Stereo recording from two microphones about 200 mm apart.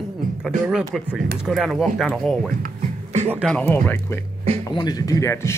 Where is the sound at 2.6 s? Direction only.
35° right (ahead or behind).